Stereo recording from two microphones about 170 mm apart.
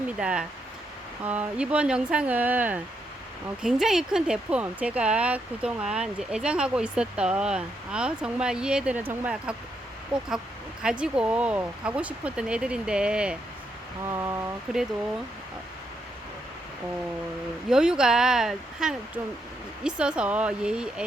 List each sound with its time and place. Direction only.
0.2 s speech: 5° right (ahead or behind)
10.8 s speech: 5° right (ahead or behind)
14.0 s speech: 15° right (ahead or behind)
17.7 s speech: 5° right (ahead or behind)